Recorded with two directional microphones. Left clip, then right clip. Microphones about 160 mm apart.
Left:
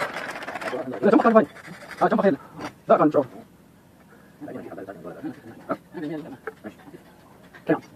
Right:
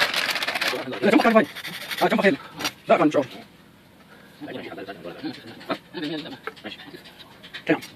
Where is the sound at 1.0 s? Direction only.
25° right (ahead or behind).